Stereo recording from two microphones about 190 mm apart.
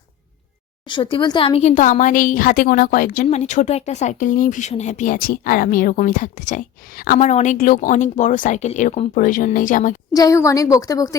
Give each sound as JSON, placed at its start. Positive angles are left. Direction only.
{"t": 0.9, "sound": "speech", "side_deg": 25}
{"t": 10.1, "sound": "a woman's voice", "side_deg": 20}